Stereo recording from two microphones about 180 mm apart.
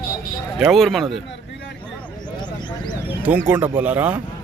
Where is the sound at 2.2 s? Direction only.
25° left (ahead or behind).